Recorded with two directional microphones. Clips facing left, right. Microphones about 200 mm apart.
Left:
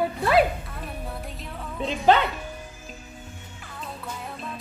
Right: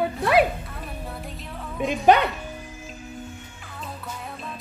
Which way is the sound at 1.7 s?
15° right (ahead or behind).